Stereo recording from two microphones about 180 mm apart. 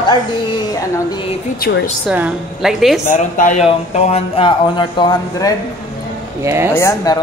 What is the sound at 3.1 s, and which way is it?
Speech, 45° left (ahead or behind).